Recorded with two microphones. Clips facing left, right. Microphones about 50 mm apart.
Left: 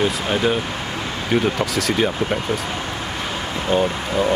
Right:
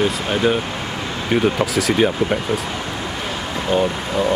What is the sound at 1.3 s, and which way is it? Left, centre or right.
Speech, centre.